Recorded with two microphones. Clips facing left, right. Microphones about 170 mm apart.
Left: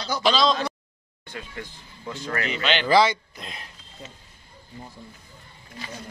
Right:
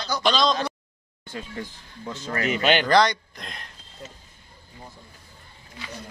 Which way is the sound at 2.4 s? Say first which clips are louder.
Right 6 dB; 45° right (ahead or behind).